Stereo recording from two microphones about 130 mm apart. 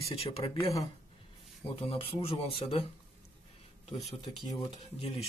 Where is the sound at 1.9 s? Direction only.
45° left (ahead or behind).